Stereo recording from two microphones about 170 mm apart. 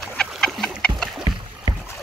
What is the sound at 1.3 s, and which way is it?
Rowboat, 25° right (ahead or behind).